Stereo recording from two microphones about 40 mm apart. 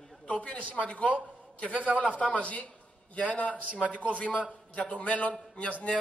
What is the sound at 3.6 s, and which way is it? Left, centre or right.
Speech, right.